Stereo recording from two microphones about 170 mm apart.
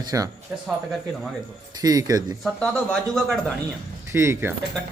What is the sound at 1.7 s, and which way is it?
Speech, 20° right (ahead or behind).